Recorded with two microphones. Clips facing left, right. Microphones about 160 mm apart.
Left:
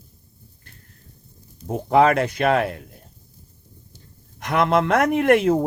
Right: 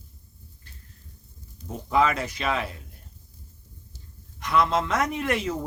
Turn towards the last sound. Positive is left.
turn(degrees=55)  # may be behind; listen again after turning